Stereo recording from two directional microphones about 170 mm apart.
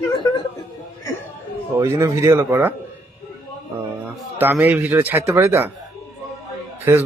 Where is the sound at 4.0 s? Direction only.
10° right (ahead or behind).